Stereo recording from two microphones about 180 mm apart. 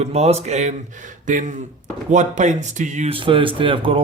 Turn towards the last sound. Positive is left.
turn(degrees=-30)  # may be behind; listen again after turning